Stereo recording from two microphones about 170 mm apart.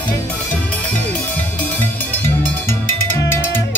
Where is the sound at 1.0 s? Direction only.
10° left (ahead or behind).